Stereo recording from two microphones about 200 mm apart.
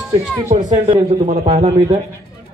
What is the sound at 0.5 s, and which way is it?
A man's voice, 35° right (ahead or behind).